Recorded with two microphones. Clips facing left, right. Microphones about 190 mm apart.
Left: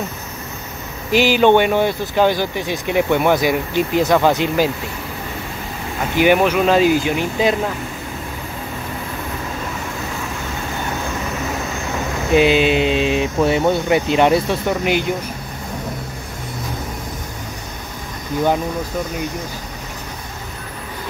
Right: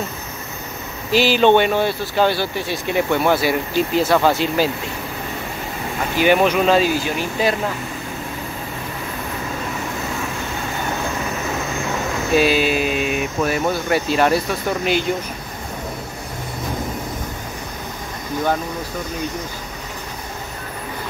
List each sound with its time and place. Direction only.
1.1 s speech: 15° left (ahead or behind)
6.1 s speech: 10° left (ahead or behind)
12.4 s speech: 20° left (ahead or behind)